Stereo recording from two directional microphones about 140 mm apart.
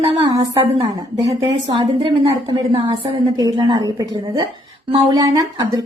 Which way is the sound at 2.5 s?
35° right (ahead or behind).